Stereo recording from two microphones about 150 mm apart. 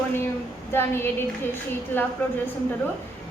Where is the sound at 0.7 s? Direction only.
15° left (ahead or behind).